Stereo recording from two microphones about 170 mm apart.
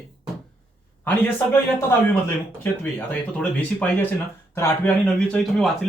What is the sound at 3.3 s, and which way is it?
Speech, 10° left (ahead or behind).